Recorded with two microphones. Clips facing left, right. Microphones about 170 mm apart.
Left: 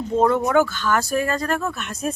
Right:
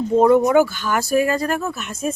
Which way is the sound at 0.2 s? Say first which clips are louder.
Right 4 dB; 10° right (ahead or behind).